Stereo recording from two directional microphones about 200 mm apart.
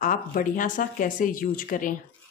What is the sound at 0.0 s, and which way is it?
Speech, 45° left (ahead or behind).